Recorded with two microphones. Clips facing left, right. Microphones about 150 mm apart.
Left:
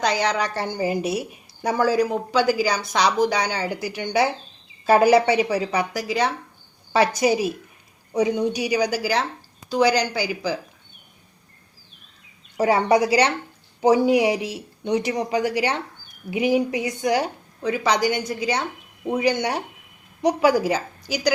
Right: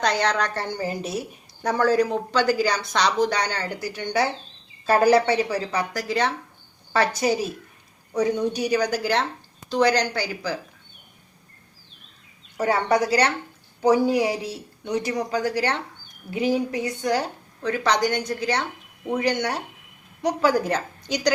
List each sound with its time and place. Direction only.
0.0 s a woman's voice: 5° left (ahead or behind)
12.5 s a woman's voice: 15° left (ahead or behind)